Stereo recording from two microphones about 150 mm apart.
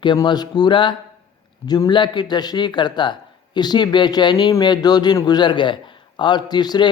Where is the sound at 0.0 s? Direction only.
30° left (ahead or behind).